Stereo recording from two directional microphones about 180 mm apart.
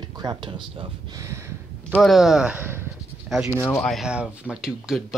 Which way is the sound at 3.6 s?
10° left (ahead or behind).